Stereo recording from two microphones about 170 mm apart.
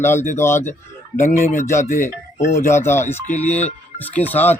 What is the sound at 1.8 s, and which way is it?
Speech, 45° left (ahead or behind).